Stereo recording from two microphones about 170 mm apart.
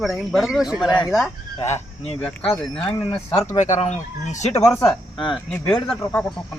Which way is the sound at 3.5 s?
40° left (ahead or behind).